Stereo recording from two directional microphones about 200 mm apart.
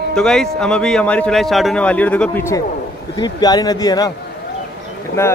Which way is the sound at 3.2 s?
20° left (ahead or behind).